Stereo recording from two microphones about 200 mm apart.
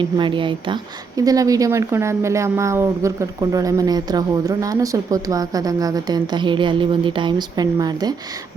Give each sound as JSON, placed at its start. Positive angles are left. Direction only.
{"t": 0.0, "sound": "a woman's voice", "side_deg": -25}